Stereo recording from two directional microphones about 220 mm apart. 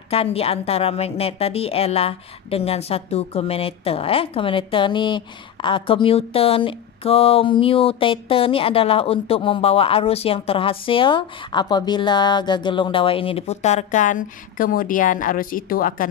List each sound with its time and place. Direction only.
0.1 s a woman's voice: 25° left (ahead or behind)